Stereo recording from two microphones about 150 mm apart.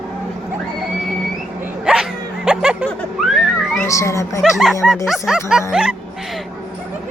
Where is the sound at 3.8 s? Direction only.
20° left (ahead or behind).